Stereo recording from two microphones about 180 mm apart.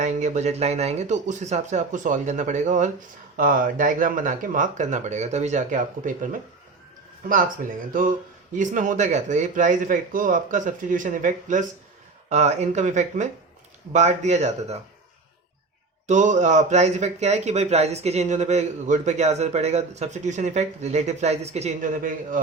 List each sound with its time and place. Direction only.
0.0 s speech: 40° right (ahead or behind)
8.5 s speech: 45° right (ahead or behind)
16.0 s speech: 45° right (ahead or behind)